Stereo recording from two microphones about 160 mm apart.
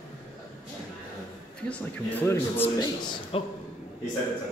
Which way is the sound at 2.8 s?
30° left (ahead or behind).